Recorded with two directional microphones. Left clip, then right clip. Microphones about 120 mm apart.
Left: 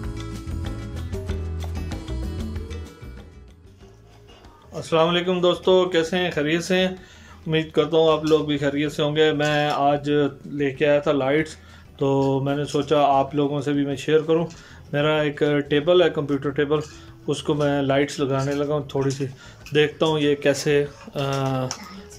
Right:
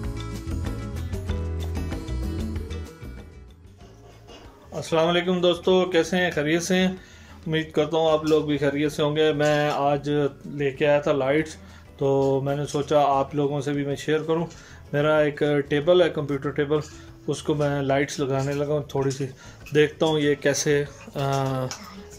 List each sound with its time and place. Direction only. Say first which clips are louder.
0.0 s music: left 1 dB; centre (ahead or behind)
4.7 s speech: left 2 dB; 5° left (ahead or behind)